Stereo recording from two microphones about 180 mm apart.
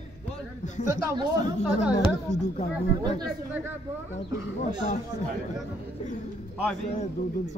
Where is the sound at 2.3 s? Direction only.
40° left (ahead or behind).